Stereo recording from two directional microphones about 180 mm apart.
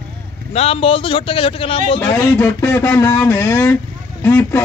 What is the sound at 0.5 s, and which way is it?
A man's voice, 35° left (ahead or behind).